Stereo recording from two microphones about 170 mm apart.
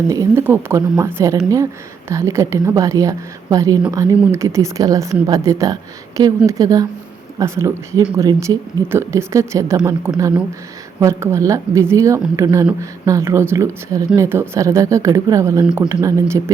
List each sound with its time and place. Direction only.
0.1 s a woman's voice: 15° right (ahead or behind)